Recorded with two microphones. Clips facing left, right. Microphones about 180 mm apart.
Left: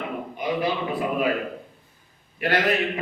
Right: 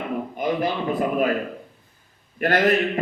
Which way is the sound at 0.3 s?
50° right (ahead or behind).